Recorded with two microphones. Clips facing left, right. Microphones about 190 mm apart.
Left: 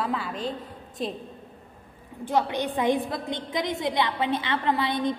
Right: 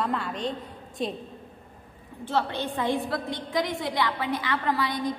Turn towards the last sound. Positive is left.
turn(degrees=25)  # may be behind; listen again after turning